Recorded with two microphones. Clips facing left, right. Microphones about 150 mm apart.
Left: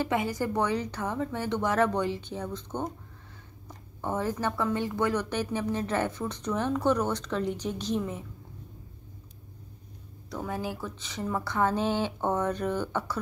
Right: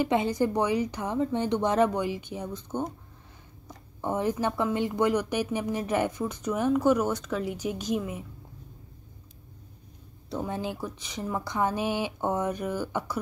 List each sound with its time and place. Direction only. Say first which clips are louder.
0.1 s speech: right 3 dB; 25° right (ahead or behind)
4.0 s speech: right 2 dB; 15° right (ahead or behind)
10.3 s speech: right 2 dB; 25° right (ahead or behind)